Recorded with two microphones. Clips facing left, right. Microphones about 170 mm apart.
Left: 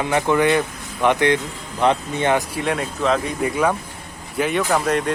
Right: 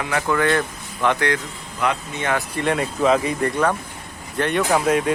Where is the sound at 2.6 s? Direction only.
Centre (ahead or behind).